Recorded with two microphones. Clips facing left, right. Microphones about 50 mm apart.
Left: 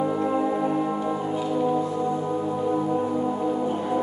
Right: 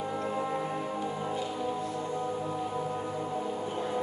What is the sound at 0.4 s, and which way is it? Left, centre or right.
Music, centre.